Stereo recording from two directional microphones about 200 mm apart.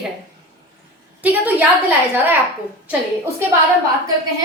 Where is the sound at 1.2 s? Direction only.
10° right (ahead or behind).